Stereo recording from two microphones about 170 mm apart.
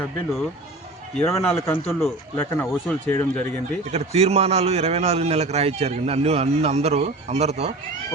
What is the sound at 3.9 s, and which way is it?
A man's voice, 40° right (ahead or behind).